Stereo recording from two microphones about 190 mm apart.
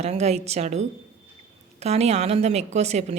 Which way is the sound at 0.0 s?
35° right (ahead or behind).